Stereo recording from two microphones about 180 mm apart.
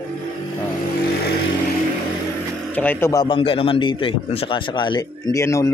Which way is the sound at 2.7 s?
10° left (ahead or behind).